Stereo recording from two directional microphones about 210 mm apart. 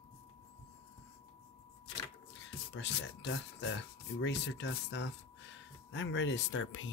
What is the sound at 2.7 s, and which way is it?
Speech, 65° left (ahead or behind).